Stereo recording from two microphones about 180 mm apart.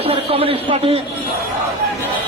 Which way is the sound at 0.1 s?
30° right (ahead or behind).